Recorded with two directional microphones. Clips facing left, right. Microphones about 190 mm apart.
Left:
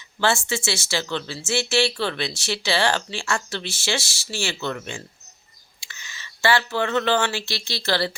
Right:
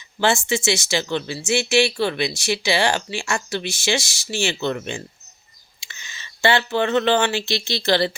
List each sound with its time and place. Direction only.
0.2 s speech: 20° right (ahead or behind)